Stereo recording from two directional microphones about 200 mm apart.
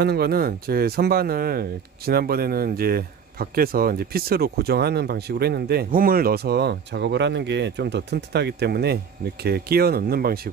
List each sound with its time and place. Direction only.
0.0 s speech: 50° right (ahead or behind)